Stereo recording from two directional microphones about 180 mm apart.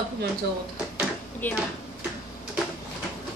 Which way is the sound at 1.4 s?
10° left (ahead or behind).